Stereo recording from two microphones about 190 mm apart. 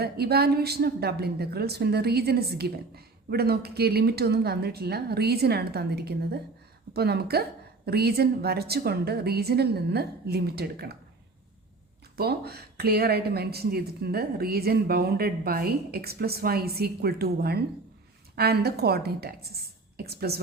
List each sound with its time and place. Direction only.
0.0 s a woman's voice: 55° right (ahead or behind)
12.1 s a woman's voice: 55° right (ahead or behind)